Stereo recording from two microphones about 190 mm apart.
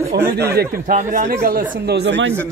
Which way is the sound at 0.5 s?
50° right (ahead or behind).